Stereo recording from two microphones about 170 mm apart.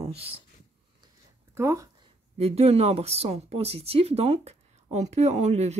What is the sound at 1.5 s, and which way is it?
Speech, 20° right (ahead or behind).